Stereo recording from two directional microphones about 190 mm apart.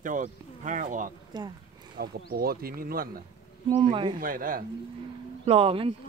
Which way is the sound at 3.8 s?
25° right (ahead or behind).